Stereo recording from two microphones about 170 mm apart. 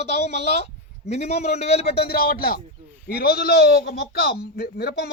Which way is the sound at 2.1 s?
60° left (ahead or behind).